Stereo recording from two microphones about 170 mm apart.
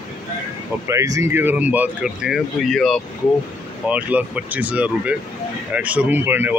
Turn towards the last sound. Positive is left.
turn(degrees=-10)  # may be behind; listen again after turning